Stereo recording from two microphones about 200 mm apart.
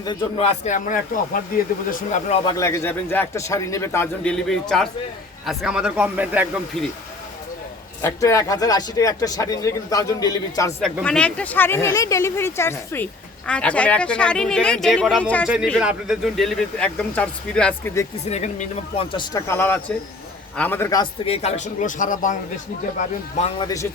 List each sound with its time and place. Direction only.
0.0 s speech: 25° left (ahead or behind); by 2.2 s 45° left (ahead or behind)
2.6 s speech: 15° left (ahead or behind); by 6.5 s 10° right (ahead or behind)
8.0 s speech: 15° left (ahead or behind)
10.8 s speech: centre (ahead or behind)
18.3 s speech: 35° left (ahead or behind)
19.1 s speech: 15° left (ahead or behind)
21.2 s speech: 35° left (ahead or behind)
23.6 s speech: 15° left (ahead or behind)